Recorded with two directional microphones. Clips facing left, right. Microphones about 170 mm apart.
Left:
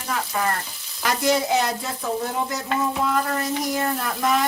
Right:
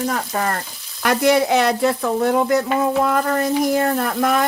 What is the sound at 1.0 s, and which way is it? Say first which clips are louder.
Speech: right 6 dB; 60° right (ahead or behind).